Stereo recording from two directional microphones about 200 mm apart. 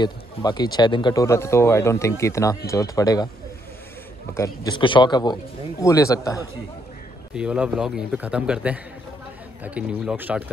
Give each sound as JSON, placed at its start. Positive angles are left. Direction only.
{"t": 0.0, "sound": "speech", "side_deg": 20}
{"t": 4.3, "sound": "speech", "side_deg": 20}
{"t": 7.3, "sound": "a man's voice", "side_deg": -5}